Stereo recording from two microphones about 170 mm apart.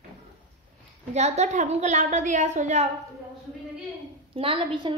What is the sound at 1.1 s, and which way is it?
A woman's voice, 40° right (ahead or behind).